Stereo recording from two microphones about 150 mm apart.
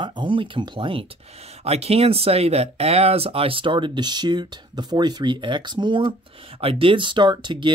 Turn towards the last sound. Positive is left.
turn(degrees=-30)  # may be behind; listen again after turning